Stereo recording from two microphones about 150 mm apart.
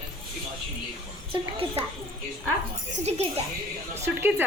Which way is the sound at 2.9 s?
45° right (ahead or behind).